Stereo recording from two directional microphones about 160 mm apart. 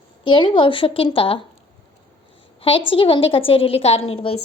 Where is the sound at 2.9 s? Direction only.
35° left (ahead or behind).